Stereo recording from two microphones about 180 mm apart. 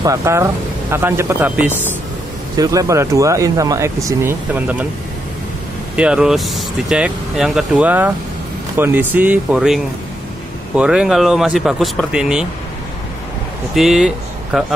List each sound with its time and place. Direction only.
0.0 s speech: 15° right (ahead or behind)
5.9 s speech: 5° right (ahead or behind)
10.8 s speech: 5° right (ahead or behind)
13.7 s speech: 5° right (ahead or behind)